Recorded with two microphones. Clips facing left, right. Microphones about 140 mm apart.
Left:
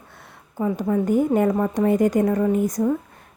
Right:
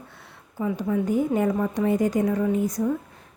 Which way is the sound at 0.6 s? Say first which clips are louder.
Left 3 dB; 45° left (ahead or behind).